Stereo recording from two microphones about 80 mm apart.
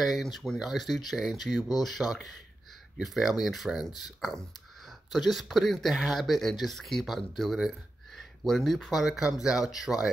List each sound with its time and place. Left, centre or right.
0.0 s speech: centre